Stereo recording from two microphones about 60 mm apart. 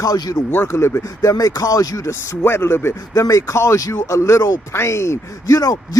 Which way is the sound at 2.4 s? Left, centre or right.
Left.